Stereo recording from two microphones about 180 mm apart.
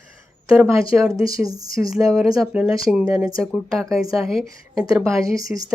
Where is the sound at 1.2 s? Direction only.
20° right (ahead or behind).